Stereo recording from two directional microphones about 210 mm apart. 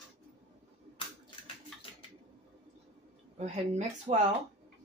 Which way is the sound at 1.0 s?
25° left (ahead or behind).